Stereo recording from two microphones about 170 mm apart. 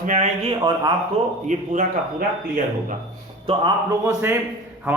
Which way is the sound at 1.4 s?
45° right (ahead or behind).